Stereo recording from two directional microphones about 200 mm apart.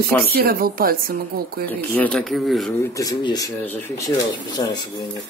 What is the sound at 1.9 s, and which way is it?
Speech, 5° left (ahead or behind).